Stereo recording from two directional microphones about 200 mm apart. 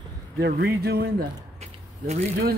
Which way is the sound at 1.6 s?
35° right (ahead or behind).